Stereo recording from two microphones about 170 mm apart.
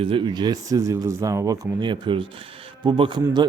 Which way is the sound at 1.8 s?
30° right (ahead or behind).